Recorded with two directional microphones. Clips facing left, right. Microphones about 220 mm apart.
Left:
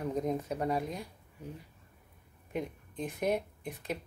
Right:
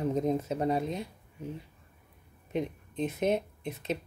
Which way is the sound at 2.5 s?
25° right (ahead or behind).